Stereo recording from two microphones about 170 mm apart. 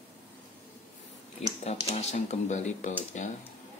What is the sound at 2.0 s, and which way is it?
Speech, 40° left (ahead or behind).